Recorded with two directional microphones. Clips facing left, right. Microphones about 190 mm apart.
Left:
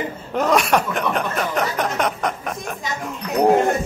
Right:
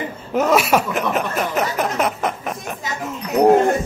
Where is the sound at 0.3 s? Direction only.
5° right (ahead or behind).